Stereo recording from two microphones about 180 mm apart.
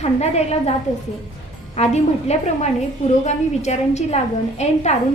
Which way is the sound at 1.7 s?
35° left (ahead or behind).